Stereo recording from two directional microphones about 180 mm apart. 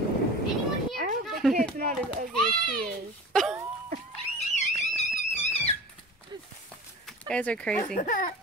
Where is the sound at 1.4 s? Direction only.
5° left (ahead or behind).